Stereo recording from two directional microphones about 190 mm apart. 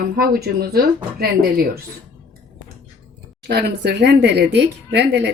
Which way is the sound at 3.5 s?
60° right (ahead or behind).